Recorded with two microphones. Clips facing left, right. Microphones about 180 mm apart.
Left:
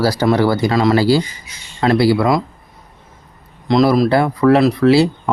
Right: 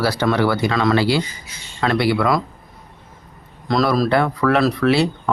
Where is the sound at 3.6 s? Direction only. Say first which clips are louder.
Left 5 dB; 25° left (ahead or behind).